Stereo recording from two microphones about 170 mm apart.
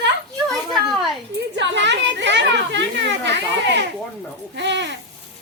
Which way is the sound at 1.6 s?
90° right.